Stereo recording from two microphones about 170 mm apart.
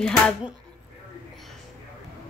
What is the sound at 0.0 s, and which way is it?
Speech, centre (ahead or behind).